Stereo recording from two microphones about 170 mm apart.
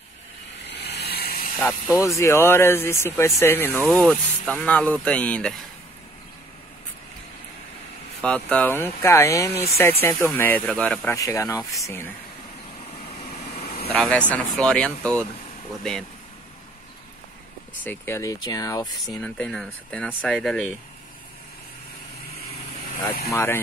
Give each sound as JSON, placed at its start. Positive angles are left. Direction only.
{"t": 0.7, "sound": "a sound", "side_deg": 75}
{"t": 1.7, "sound": "speech", "side_deg": 15}
{"t": 8.2, "sound": "speech", "side_deg": 5}
{"t": 11.1, "sound": "speech", "side_deg": 20}
{"t": 13.2, "sound": "vehicle", "side_deg": 40}
{"t": 13.9, "sound": "speech", "side_deg": 5}
{"t": 17.8, "sound": "speech", "side_deg": 15}
{"t": 18.9, "sound": "speech", "side_deg": 5}
{"t": 23.3, "sound": "speech", "side_deg": 15}